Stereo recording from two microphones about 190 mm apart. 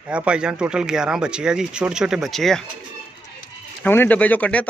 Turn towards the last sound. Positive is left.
turn(degrees=5)  # may be behind; listen again after turning